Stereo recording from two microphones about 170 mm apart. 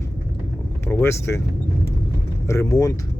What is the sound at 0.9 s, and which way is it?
Speech, 15° left (ahead or behind).